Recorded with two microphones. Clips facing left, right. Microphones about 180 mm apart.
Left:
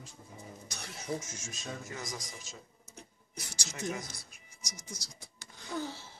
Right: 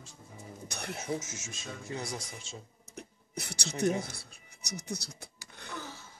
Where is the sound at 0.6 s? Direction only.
60° right (ahead or behind).